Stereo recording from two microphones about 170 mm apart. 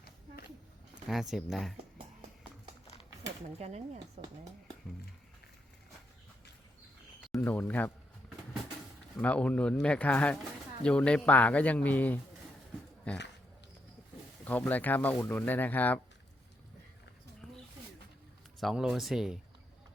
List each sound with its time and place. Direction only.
1.0 s speech: centre (ahead or behind)
3.6 s speech: 40° right (ahead or behind)
7.3 s speech: 10° left (ahead or behind)
9.2 s speech: 10° left (ahead or behind)
14.4 s speech: 10° left (ahead or behind)
17.4 s a sound: centre (ahead or behind)
18.6 s speech: centre (ahead or behind)